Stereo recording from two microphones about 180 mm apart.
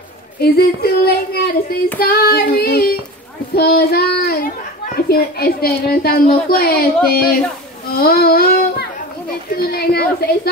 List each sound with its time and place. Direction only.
0.4 s a woman's voice: 60° left (ahead or behind)
7.9 s a sound: 60° left (ahead or behind)
9.6 s a woman's voice: 60° left (ahead or behind)